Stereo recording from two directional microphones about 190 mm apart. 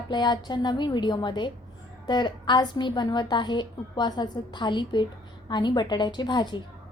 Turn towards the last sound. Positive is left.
turn(degrees=25)  # may be behind; listen again after turning